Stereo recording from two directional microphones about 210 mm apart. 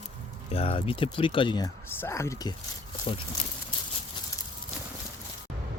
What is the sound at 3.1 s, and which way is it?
Speech, 25° left (ahead or behind).